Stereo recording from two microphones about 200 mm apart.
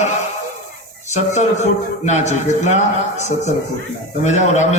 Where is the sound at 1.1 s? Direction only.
35° left (ahead or behind).